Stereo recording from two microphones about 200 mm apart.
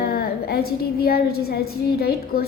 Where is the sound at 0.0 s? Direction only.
50° left (ahead or behind).